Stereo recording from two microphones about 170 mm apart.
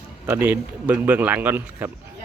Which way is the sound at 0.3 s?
10° right (ahead or behind).